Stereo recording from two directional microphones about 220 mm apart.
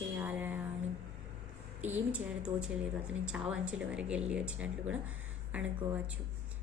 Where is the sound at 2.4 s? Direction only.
5° right (ahead or behind).